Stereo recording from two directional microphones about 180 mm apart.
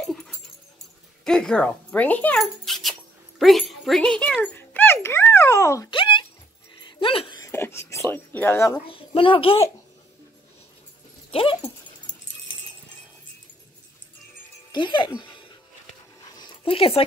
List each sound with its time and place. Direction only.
1.2 s speech: 5° left (ahead or behind)
5.9 s a sound: 25° left (ahead or behind)
7.0 s speech: 30° left (ahead or behind); by 8.7 s 15° left (ahead or behind)
8.8 s a woman's voice: 30° left (ahead or behind)
11.3 s dog: 30° left (ahead or behind)
14.7 s speech: 25° left (ahead or behind)
16.3 s dog: 25° left (ahead or behind)